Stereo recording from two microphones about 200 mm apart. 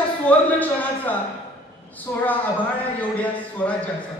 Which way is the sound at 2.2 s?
10° left (ahead or behind).